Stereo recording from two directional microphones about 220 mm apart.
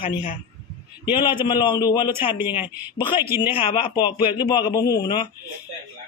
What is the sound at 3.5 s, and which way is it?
A man's voice, 20° left (ahead or behind).